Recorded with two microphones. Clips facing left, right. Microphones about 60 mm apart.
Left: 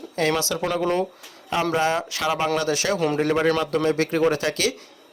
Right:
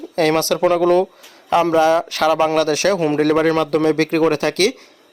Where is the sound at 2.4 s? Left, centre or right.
Right.